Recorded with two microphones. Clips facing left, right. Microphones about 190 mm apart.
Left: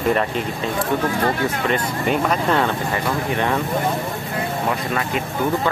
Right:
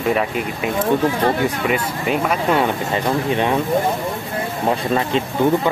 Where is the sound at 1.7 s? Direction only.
5° right (ahead or behind).